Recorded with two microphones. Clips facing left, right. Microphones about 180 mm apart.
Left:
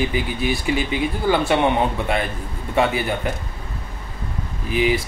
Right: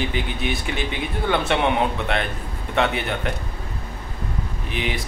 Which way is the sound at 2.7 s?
5° left (ahead or behind).